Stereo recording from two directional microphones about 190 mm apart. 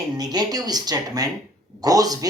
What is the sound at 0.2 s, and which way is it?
A woman's voice, 20° right (ahead or behind).